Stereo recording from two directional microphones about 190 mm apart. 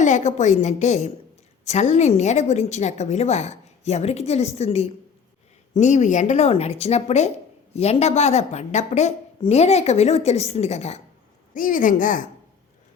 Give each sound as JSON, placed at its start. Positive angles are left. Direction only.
{"t": 0.0, "sound": "a woman's voice", "side_deg": 40}